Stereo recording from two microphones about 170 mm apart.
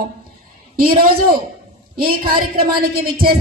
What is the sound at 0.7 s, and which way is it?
Speech, 60° right (ahead or behind).